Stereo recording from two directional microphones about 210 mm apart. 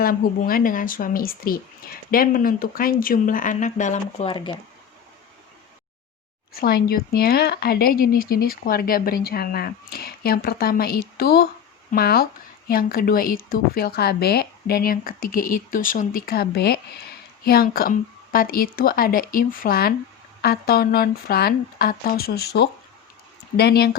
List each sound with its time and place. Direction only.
0.0 s speech: 45° left (ahead or behind); by 4.5 s 25° left (ahead or behind)
6.5 s speech: 45° left (ahead or behind)